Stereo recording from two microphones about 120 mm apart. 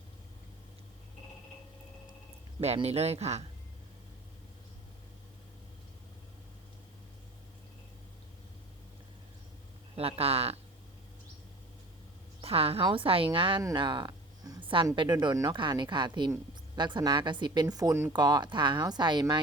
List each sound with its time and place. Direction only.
2.7 s speech: 60° right (ahead or behind)
9.9 s speech: 55° right (ahead or behind)
12.4 s a woman's voice: 55° right (ahead or behind)
13.7 s a sound: 40° right (ahead or behind)
14.9 s speech: 40° right (ahead or behind)